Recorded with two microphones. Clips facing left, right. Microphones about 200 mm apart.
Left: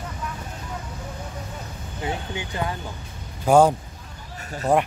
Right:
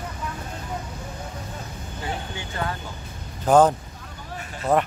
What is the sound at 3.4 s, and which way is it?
Speech, 10° left (ahead or behind).